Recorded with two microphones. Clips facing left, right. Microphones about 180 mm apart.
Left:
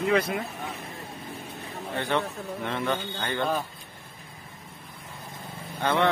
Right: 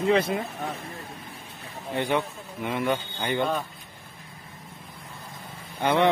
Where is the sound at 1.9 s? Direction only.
15° right (ahead or behind).